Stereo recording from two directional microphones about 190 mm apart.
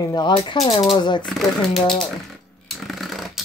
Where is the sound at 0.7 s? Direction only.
35° left (ahead or behind).